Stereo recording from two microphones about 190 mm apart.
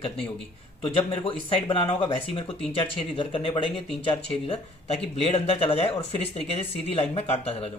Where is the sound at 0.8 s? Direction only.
25° left (ahead or behind).